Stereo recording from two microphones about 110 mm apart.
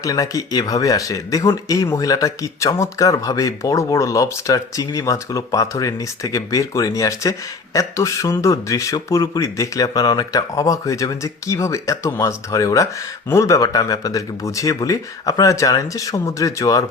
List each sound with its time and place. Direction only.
0.0 s speech: 30° left (ahead or behind)